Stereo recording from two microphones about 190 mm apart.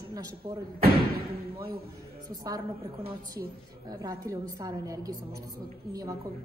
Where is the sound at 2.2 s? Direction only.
20° right (ahead or behind).